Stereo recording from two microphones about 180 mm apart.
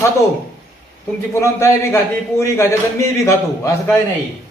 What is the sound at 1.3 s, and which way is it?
A man's voice, 15° left (ahead or behind).